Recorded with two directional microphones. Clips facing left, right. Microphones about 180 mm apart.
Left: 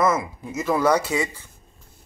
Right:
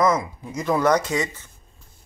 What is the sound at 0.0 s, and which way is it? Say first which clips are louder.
Speech: right 1 dB; 5° left (ahead or behind).